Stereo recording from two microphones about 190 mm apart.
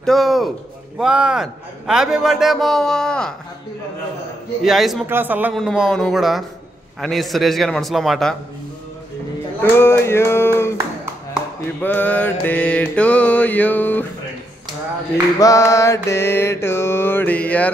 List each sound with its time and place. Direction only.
0.0 s a man's voice: centre (ahead or behind)
4.6 s a man's voice: centre (ahead or behind)
9.6 s mantra: 10° left (ahead or behind)
11.8 s mantra: 10° left (ahead or behind)
15.3 s mantra: 15° left (ahead or behind)